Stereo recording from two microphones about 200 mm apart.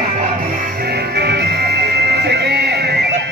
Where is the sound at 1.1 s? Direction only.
55° right (ahead or behind).